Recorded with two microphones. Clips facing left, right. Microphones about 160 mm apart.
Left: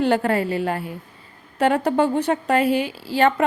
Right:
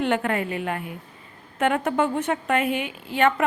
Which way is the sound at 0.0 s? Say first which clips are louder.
Left 4 dB; 35° left (ahead or behind).